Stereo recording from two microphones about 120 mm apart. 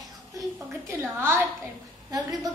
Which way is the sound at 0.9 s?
20° right (ahead or behind).